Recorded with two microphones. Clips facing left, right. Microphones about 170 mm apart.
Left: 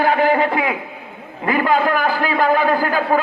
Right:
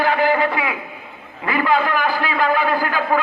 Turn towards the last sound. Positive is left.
turn(degrees=40)  # may be behind; listen again after turning